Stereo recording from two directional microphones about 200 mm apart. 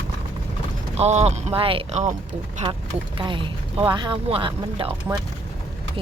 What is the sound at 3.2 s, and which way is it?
Speech, 25° right (ahead or behind).